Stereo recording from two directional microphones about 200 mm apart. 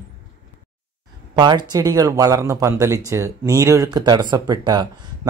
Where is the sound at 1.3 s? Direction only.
20° right (ahead or behind).